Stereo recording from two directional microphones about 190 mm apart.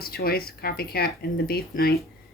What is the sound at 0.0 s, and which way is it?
A woman's voice, 55° left (ahead or behind).